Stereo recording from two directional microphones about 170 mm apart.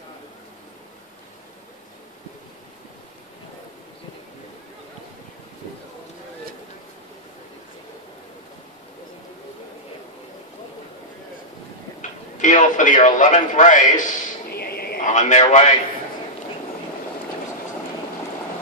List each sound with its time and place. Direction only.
12.0 s a man's voice: 50° left (ahead or behind)
14.5 s a sound: 65° left (ahead or behind)
15.0 s a man's voice: 45° left (ahead or behind)